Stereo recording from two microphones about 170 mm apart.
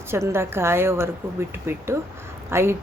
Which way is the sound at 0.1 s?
15° right (ahead or behind).